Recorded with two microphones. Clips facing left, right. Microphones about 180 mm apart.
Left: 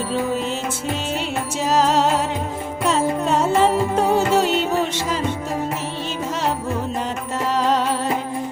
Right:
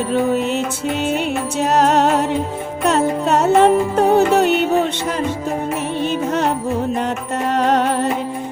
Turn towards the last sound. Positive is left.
turn(degrees=-65)  # may be behind; listen again after turning